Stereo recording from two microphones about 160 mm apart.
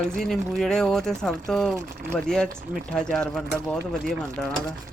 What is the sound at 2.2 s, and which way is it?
Speech, 5° left (ahead or behind).